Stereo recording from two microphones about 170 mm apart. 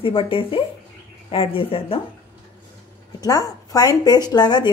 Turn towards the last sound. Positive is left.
turn(degrees=25)  # may be behind; listen again after turning